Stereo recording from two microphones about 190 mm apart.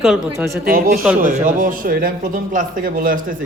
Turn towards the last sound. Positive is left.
turn(degrees=-45)  # may be behind; listen again after turning